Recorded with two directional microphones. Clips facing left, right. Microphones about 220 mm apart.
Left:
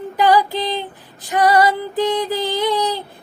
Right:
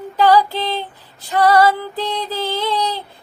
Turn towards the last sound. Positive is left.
turn(degrees=15)  # may be behind; listen again after turning